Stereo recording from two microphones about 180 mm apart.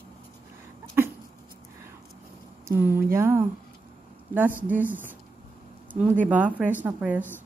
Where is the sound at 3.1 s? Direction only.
15° right (ahead or behind).